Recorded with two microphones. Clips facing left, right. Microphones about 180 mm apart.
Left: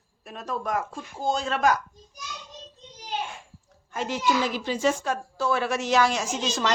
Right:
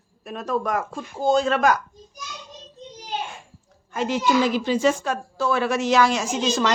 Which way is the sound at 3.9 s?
90° right.